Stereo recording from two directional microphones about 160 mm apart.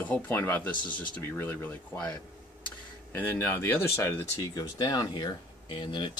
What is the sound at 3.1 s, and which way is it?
Speech, 10° left (ahead or behind).